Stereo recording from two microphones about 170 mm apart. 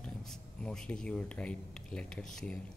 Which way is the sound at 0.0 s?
5° left (ahead or behind).